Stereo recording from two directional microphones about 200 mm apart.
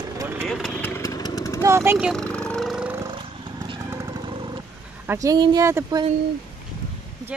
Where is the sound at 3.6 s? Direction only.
20° right (ahead or behind).